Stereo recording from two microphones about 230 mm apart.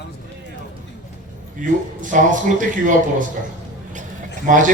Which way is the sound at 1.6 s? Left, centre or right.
Right.